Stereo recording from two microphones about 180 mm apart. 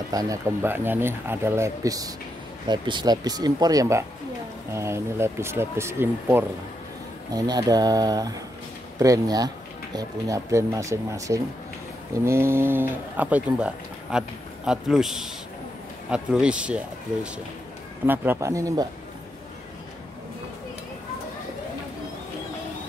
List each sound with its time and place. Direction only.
0.1 s speech: 20° right (ahead or behind)